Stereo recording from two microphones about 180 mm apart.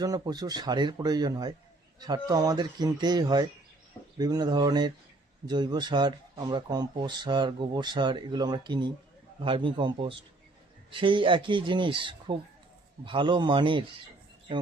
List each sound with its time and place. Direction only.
0.0 s speech: 20° right (ahead or behind)